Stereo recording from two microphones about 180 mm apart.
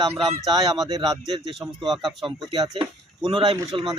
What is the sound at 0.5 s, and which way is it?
Speech, 20° right (ahead or behind).